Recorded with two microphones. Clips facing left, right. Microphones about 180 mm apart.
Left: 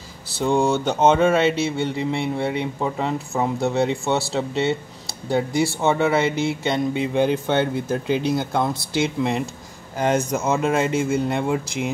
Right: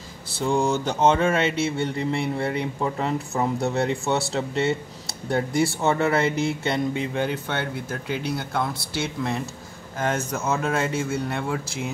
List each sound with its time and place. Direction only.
0.5 s speech: 20° left (ahead or behind)
1.8 s speech: centre (ahead or behind)
3.5 s speech: centre (ahead or behind)
6.7 s speech: 20° left (ahead or behind)